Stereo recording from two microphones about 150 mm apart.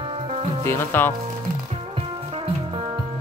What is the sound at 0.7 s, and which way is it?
Speech, 15° left (ahead or behind).